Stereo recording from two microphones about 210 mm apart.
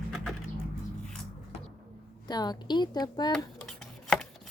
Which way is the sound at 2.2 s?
20° left (ahead or behind).